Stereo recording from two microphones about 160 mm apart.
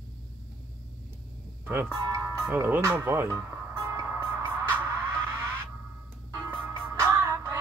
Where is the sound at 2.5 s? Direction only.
15° right (ahead or behind).